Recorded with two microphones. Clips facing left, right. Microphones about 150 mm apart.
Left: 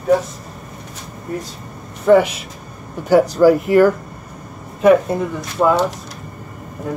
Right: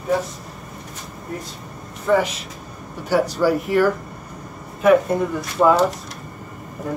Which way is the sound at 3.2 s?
45° left (ahead or behind).